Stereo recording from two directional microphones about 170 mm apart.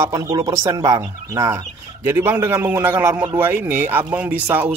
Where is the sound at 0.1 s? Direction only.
25° right (ahead or behind).